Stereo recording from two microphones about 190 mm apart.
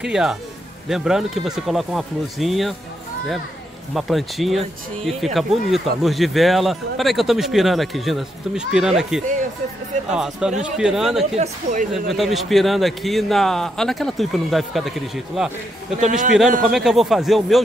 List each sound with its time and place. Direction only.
0.0 s speech: 5° right (ahead or behind)
3.9 s speech: centre (ahead or behind)
11.3 s speech: 45° right (ahead or behind)
12.1 s speech: centre (ahead or behind)
16.0 s a man's voice: 40° right (ahead or behind)
16.7 s speech: centre (ahead or behind)